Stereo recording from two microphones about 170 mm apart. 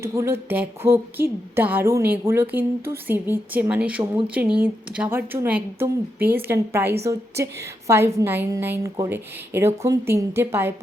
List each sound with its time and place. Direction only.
0.0 s a woman's voice: 15° right (ahead or behind)